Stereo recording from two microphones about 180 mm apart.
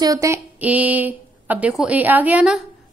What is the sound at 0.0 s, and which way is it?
A woman's voice, 20° right (ahead or behind).